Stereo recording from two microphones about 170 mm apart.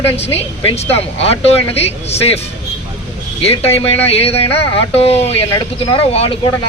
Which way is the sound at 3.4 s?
35° left (ahead or behind).